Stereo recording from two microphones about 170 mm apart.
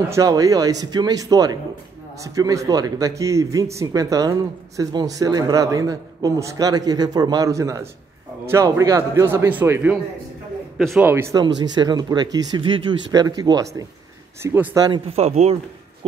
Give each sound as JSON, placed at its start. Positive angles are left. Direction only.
{"t": 0.1, "sound": "a man's voice", "side_deg": -20}
{"t": 10.8, "sound": "a man's voice", "side_deg": 0}
{"t": 11.3, "sound": "a man's voice", "side_deg": -25}
{"t": 14.9, "sound": "speech", "side_deg": -35}